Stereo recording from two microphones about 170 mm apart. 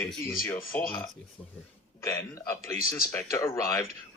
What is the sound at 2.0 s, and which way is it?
Speech, 15° left (ahead or behind).